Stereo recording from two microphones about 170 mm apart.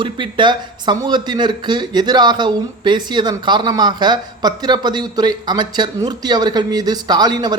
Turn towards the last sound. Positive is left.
turn(degrees=-25)  # may be behind; listen again after turning